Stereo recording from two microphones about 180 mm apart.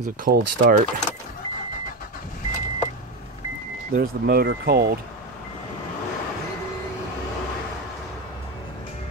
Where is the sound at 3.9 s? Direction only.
60° right (ahead or behind).